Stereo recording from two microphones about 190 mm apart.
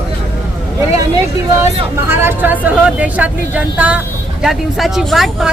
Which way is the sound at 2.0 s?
10° right (ahead or behind).